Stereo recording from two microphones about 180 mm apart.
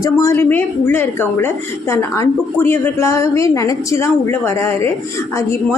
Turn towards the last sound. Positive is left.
turn(degrees=10)  # may be behind; listen again after turning